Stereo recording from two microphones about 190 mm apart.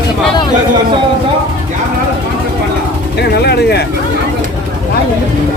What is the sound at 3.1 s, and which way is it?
Music, 60° left (ahead or behind).